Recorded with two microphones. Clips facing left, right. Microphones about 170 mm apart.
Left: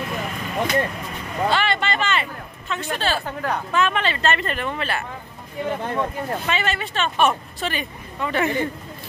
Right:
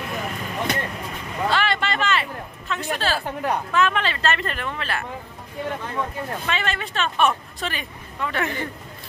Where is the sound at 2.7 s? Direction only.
Centre (ahead or behind).